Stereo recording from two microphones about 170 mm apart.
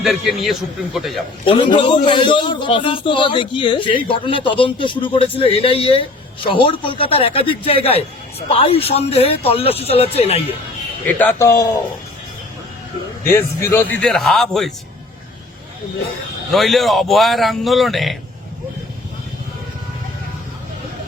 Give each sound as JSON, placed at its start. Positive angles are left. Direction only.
{"t": 0.0, "sound": "a man's voice", "side_deg": 0}
{"t": 1.5, "sound": "a man's voice", "side_deg": 30}
{"t": 11.0, "sound": "a man's voice", "side_deg": 10}
{"t": 13.2, "sound": "a man's voice", "side_deg": 15}
{"t": 16.5, "sound": "a man's voice", "side_deg": 0}